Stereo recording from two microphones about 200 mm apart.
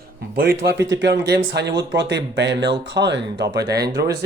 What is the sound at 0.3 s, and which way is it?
Speech, 50° right (ahead or behind).